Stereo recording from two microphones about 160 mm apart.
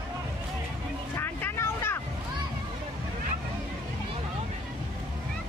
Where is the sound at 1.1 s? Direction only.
15° left (ahead or behind).